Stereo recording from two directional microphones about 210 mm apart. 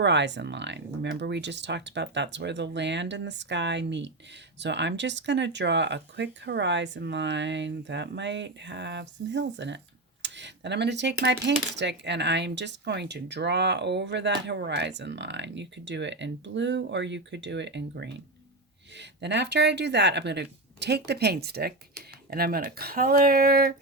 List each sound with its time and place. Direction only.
0.0 s speech: 55° right (ahead or behind)